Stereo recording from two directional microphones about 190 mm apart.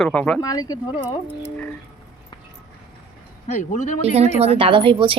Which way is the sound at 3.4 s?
40° left (ahead or behind).